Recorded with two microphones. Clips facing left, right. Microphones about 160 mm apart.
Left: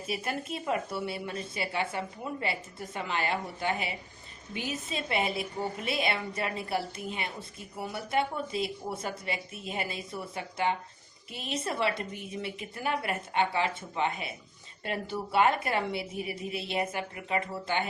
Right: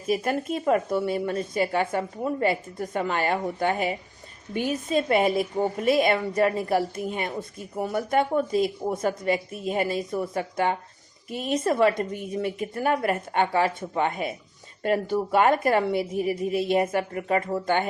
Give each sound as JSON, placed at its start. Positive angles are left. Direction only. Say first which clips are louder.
{"t": 0.1, "sound": "speech", "louder": "right 9 dB", "side_deg": -45}